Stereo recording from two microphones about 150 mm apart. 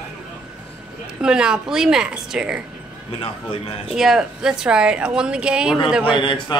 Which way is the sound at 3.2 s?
40° left (ahead or behind).